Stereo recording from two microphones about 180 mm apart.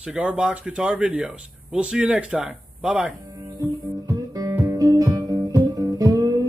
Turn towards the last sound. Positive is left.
turn(degrees=-20)  # may be behind; listen again after turning